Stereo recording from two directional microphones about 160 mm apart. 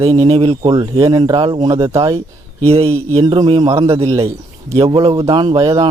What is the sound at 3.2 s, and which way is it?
Speech, 25° right (ahead or behind).